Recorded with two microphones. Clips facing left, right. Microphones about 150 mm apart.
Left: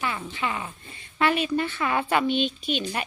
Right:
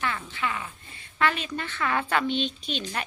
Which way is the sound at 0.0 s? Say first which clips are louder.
Left 1 dB; 15° left (ahead or behind).